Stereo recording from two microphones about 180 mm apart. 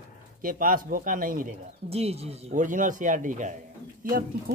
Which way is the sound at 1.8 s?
35° right (ahead or behind).